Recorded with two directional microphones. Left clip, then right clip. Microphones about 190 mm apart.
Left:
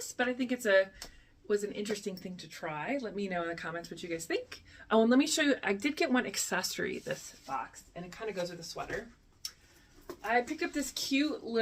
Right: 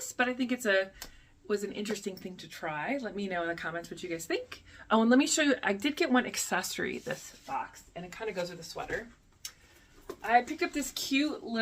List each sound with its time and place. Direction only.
0.2 s speech: 15° right (ahead or behind)
10.2 s speech: 15° right (ahead or behind)